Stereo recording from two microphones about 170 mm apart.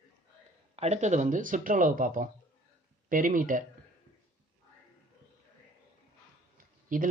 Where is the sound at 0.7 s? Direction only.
40° right (ahead or behind).